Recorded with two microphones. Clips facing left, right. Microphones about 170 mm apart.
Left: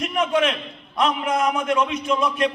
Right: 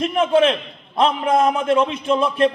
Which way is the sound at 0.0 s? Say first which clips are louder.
Right 5 dB; 30° right (ahead or behind).